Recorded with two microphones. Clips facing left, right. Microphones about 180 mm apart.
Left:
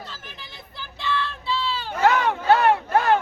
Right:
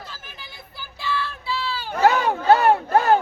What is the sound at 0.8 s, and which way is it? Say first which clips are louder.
Child singing: left 1 dB; 5° right (ahead or behind).